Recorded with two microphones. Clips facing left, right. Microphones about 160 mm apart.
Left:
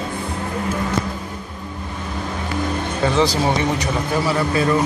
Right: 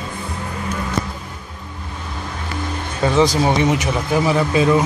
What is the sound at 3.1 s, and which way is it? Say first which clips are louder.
Speech: right 4 dB; 15° right (ahead or behind).